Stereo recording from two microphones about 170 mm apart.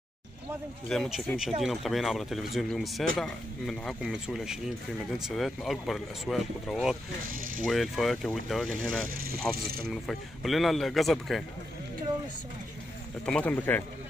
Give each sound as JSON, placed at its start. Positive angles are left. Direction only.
{"t": 0.8, "sound": "speech", "side_deg": 0}
{"t": 7.2, "sound": "speech", "side_deg": -55}
{"t": 7.6, "sound": "speech", "side_deg": 0}
{"t": 9.1, "sound": "speech", "side_deg": -60}
{"t": 9.8, "sound": "speech", "side_deg": 0}
{"t": 13.2, "sound": "speech", "side_deg": 5}